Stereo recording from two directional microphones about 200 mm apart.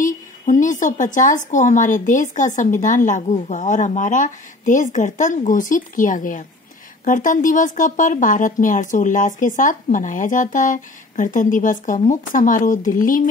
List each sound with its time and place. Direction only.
0.0 s a woman's voice: 40° left (ahead or behind)